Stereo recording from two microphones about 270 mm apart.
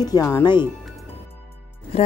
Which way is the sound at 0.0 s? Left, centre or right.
Centre.